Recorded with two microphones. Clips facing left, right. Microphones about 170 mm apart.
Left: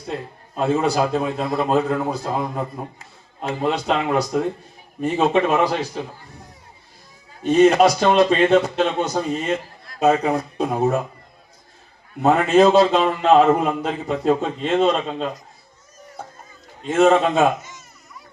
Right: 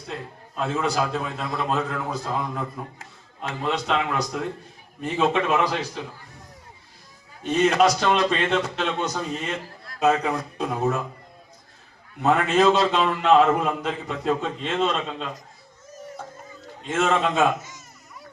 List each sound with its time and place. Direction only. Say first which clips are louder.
0.5 s a man's voice: left 6 dB; 40° left (ahead or behind)
7.4 s a man's voice: left 6 dB; 35° left (ahead or behind)
12.2 s a man's voice: left 5 dB; 40° left (ahead or behind)
16.9 s a man's voice: left 7 dB; 40° left (ahead or behind)